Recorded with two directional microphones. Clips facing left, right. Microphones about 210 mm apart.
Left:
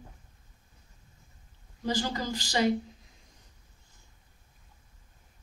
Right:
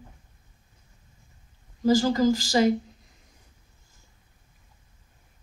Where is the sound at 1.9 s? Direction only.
40° right (ahead or behind).